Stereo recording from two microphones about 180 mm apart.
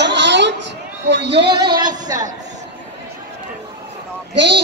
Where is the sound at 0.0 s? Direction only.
75° right (ahead or behind).